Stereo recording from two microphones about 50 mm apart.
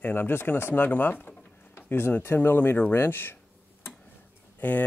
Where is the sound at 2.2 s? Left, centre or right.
Left.